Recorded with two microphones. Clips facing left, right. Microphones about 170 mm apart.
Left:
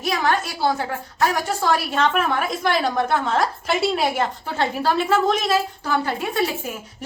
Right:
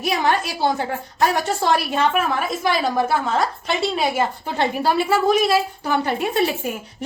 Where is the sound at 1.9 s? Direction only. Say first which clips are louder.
Right 1 dB; 10° right (ahead or behind).